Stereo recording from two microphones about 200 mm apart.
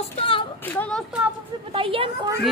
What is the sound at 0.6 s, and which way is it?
Speech, 10° left (ahead or behind).